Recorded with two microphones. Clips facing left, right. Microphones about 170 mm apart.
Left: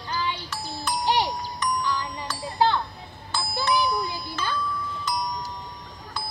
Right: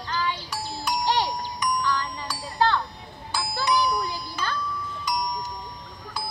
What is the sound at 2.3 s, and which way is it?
Wind chime, 10° right (ahead or behind).